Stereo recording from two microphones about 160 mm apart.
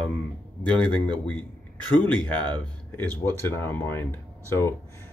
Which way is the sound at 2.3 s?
10° left (ahead or behind).